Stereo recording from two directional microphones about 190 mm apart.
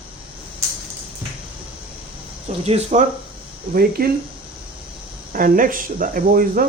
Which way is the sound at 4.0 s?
50° right (ahead or behind).